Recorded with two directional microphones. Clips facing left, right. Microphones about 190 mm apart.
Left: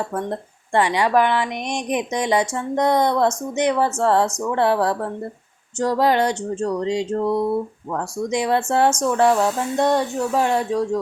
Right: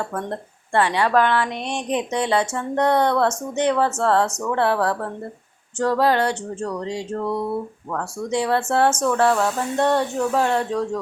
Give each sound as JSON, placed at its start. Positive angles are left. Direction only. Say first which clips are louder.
{"t": 0.1, "sound": "speech", "louder": "left 2 dB", "side_deg": 10}